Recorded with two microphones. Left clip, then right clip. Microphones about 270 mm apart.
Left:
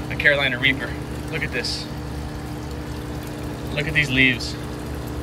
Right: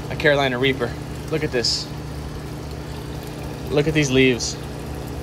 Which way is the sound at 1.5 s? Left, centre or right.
Centre.